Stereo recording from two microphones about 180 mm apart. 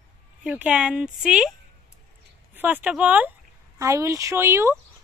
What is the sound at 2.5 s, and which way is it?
Speech, 10° right (ahead or behind).